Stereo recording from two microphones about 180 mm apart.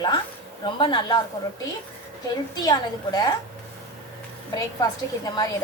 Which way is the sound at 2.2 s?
20° left (ahead or behind).